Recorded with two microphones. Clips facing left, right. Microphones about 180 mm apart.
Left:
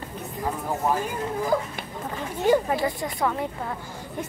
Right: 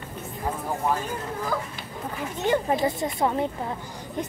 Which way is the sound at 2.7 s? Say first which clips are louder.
Right 2 dB; 20° right (ahead or behind).